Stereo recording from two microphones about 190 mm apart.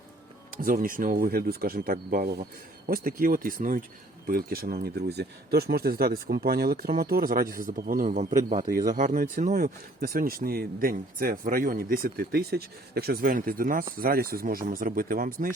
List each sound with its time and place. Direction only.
0.5 s speech: 50° right (ahead or behind)